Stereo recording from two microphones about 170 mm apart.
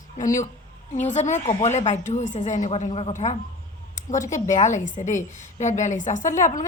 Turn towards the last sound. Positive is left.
turn(degrees=45)  # may be behind; listen again after turning